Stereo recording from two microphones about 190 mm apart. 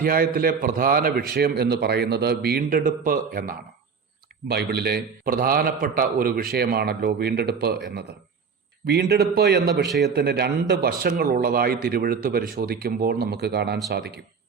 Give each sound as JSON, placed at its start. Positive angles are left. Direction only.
{"t": 0.0, "sound": "a man's voice", "side_deg": -50}
{"t": 8.9, "sound": "speech", "side_deg": -60}
{"t": 9.8, "sound": "a man's voice", "side_deg": 0}
{"t": 10.1, "sound": "a man's voice", "side_deg": -55}